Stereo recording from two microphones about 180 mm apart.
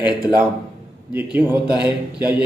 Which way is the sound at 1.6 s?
25° left (ahead or behind).